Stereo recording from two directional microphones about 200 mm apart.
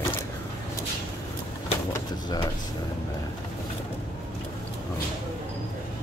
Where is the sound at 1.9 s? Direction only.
20° left (ahead or behind).